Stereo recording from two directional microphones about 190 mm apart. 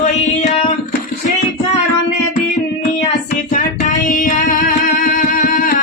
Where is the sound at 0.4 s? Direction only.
35° left (ahead or behind).